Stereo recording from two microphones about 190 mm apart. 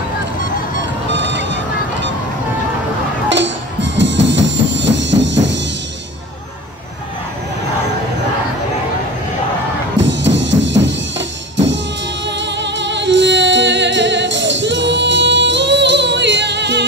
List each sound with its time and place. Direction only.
0.7 s music: 70° right (ahead or behind)
3.3 s music: 70° right (ahead or behind)
9.9 s music: 75° right (ahead or behind)